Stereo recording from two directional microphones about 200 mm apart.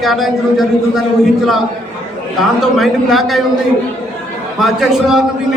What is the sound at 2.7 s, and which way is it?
Speech, centre (ahead or behind).